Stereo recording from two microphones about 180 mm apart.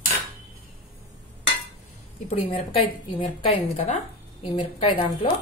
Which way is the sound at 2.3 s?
30° left (ahead or behind).